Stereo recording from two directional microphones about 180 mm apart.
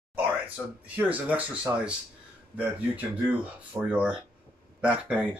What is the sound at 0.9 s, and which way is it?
Speech, 10° right (ahead or behind).